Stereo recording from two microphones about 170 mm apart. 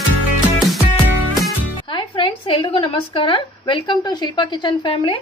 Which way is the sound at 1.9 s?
30° left (ahead or behind).